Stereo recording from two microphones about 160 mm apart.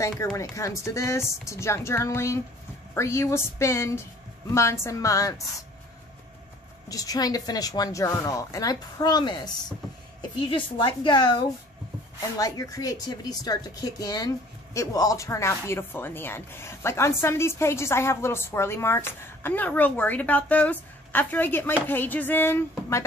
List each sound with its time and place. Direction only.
0.0 s speech: 20° left (ahead or behind)
6.9 s a woman's voice: 20° left (ahead or behind)